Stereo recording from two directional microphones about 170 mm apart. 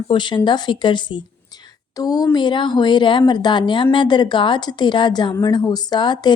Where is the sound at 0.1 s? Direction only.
30° left (ahead or behind).